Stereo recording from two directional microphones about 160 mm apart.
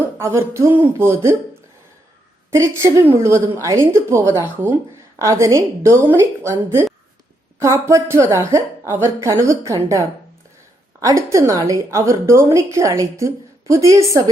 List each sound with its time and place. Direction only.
0.2 s speech: 15° right (ahead or behind)
2.5 s a woman's voice: 15° right (ahead or behind)